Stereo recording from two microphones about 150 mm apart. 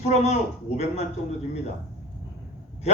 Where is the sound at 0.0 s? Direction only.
45° left (ahead or behind).